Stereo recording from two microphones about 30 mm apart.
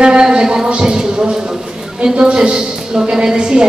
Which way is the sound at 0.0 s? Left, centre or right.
Right.